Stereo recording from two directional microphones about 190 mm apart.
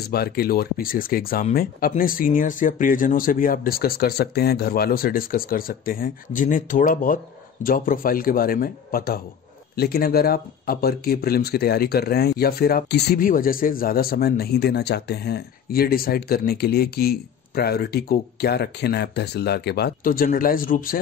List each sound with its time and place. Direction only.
0.0 s speech: 55° left (ahead or behind)